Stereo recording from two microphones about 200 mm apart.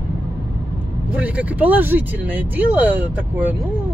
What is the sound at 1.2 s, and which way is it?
Speech, 5° right (ahead or behind).